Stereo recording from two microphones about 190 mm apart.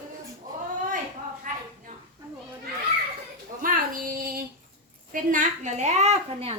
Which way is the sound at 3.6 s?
45° right (ahead or behind).